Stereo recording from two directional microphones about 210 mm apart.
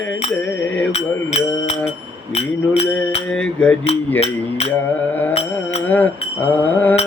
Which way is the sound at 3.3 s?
5° left (ahead or behind).